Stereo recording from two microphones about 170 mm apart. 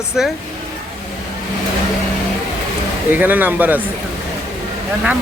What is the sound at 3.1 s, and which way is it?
Speech, 10° right (ahead or behind).